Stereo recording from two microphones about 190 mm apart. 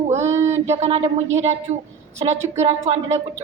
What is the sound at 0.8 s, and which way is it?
Speech, 35° right (ahead or behind).